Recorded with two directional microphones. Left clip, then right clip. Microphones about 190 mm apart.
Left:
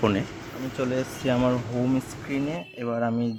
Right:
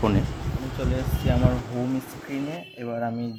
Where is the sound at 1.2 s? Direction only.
15° left (ahead or behind).